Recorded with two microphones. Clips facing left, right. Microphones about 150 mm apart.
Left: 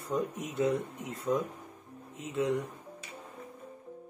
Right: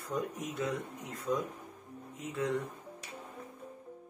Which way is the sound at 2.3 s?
20° left (ahead or behind).